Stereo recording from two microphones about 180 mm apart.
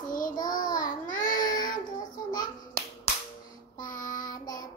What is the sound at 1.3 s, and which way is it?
Child singing, 20° left (ahead or behind).